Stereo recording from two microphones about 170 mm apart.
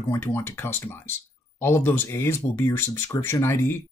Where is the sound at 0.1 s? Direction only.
10° left (ahead or behind).